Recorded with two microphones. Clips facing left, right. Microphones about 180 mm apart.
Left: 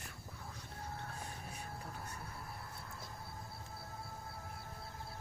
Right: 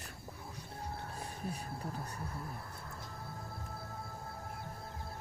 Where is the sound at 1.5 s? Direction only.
35° right (ahead or behind).